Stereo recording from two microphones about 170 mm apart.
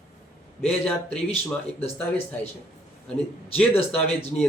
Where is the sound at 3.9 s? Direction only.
5° left (ahead or behind).